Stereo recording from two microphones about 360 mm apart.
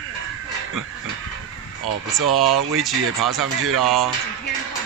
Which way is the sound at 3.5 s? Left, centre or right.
Right.